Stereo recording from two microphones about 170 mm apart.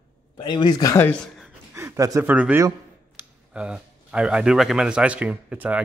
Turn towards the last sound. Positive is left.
turn(degrees=-5)  # may be behind; listen again after turning